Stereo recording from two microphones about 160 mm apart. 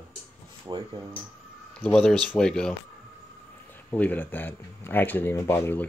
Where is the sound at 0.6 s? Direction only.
30° right (ahead or behind).